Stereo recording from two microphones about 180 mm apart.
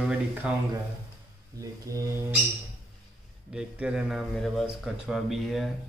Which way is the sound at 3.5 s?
5° right (ahead or behind).